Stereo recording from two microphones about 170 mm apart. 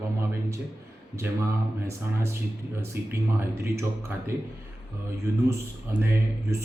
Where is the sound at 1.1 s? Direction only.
15° right (ahead or behind).